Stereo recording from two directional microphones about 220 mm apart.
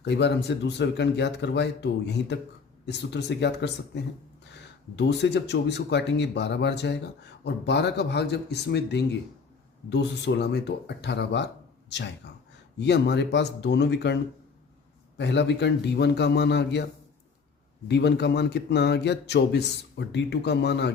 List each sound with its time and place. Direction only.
0.0 s speech: 50° left (ahead or behind)
15.2 s speech: 50° left (ahead or behind)
17.8 s speech: 50° left (ahead or behind)